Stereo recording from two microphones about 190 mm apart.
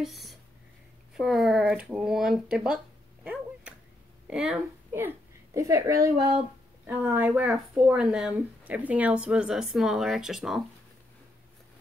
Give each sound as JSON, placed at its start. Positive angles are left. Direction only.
{"t": 0.0, "sound": "a sound", "side_deg": 0}
{"t": 1.1, "sound": "speech", "side_deg": 0}
{"t": 4.3, "sound": "a woman's voice", "side_deg": -5}